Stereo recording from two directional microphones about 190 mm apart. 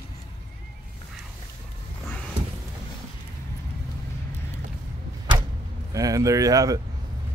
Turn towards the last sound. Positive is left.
turn(degrees=-20)  # may be behind; listen again after turning